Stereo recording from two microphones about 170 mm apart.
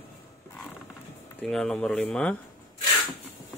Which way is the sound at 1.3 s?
5° left (ahead or behind).